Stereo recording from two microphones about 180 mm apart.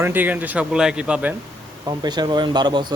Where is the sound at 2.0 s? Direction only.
25° right (ahead or behind).